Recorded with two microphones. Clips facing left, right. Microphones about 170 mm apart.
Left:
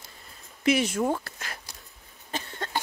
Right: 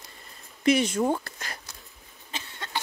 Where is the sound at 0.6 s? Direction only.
5° left (ahead or behind).